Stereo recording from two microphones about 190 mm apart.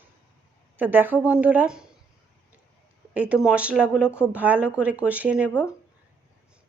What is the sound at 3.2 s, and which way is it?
Speech, 5° right (ahead or behind).